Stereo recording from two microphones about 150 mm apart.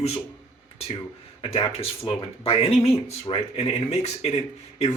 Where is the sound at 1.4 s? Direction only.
35° left (ahead or behind).